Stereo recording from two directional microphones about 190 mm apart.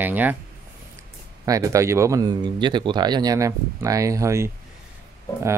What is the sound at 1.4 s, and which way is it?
Speech, 15° right (ahead or behind).